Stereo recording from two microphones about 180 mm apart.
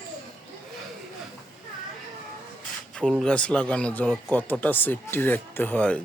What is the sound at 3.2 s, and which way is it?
Speech, 5° left (ahead or behind).